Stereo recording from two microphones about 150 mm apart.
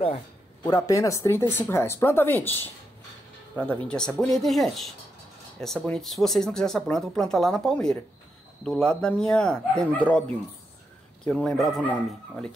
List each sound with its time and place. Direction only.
0.7 s speech: 25° left (ahead or behind); by 11.8 s centre (ahead or behind)